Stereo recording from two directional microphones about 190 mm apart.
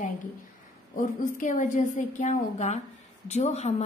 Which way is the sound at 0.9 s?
45° left (ahead or behind).